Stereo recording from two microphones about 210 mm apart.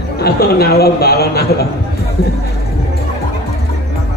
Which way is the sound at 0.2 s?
50° left (ahead or behind).